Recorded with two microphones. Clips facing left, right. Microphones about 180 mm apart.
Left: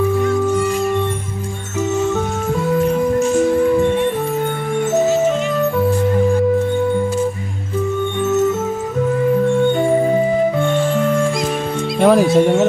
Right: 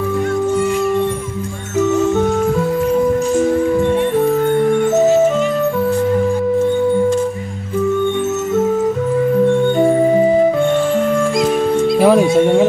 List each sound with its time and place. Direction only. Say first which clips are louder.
12.0 s music: left 1 dB; centre (ahead or behind)